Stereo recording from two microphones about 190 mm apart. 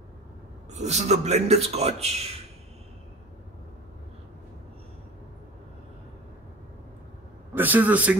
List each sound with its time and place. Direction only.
0.7 s a man's voice: 35° right (ahead or behind)
7.5 s a man's voice: 10° right (ahead or behind)